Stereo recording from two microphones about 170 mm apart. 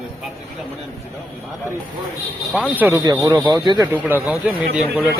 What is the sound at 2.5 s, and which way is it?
A man's voice, 5° right (ahead or behind).